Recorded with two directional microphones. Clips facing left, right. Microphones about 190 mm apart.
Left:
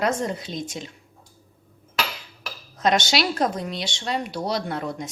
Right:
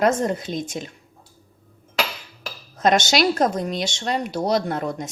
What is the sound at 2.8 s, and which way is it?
A woman's voice, 50° right (ahead or behind).